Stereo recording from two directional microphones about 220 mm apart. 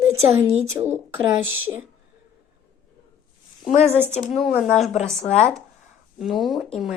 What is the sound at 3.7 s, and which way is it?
Speech, 30° left (ahead or behind).